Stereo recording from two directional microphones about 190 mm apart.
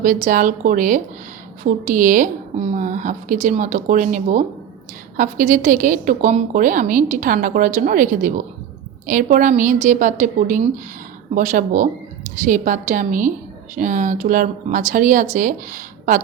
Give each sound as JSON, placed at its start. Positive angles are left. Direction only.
{"t": 0.0, "sound": "a woman's voice", "side_deg": -45}